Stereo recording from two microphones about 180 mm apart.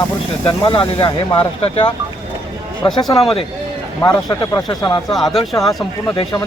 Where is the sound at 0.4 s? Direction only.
30° left (ahead or behind).